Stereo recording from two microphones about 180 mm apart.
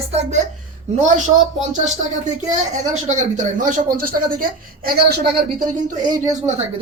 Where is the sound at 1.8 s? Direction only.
40° right (ahead or behind); by 5.4 s 65° right (ahead or behind).